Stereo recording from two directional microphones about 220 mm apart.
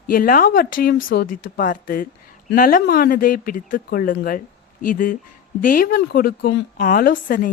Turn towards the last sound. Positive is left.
turn(degrees=40)  # may be behind; listen again after turning